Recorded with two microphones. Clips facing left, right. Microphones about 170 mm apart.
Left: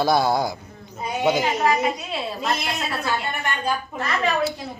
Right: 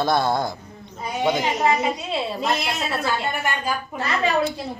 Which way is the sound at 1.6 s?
25° right (ahead or behind).